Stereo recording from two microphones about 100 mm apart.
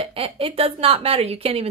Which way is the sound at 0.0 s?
70° right (ahead or behind).